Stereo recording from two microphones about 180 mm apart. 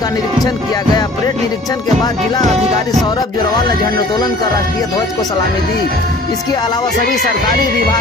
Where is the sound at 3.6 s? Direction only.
20° left (ahead or behind).